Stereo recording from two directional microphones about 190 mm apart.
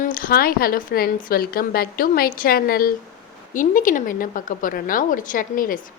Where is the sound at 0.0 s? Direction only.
45° left (ahead or behind).